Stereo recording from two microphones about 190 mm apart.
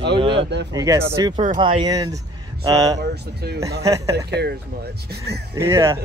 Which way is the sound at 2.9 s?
60° right (ahead or behind).